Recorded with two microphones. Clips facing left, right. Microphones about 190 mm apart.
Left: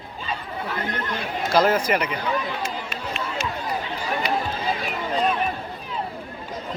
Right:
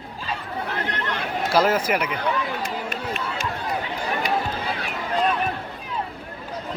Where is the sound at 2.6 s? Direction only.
50° right (ahead or behind).